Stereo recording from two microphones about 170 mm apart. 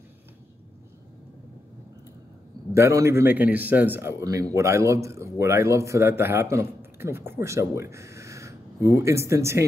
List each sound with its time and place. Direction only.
2.7 s a man's voice: 15° right (ahead or behind)